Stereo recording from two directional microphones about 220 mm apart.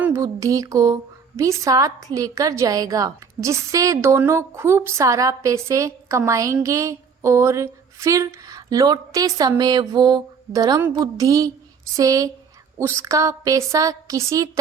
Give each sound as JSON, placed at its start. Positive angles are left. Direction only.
{"t": 0.0, "sound": "a woman's voice", "side_deg": -15}